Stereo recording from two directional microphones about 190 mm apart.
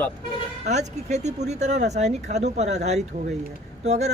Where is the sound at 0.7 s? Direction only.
35° right (ahead or behind).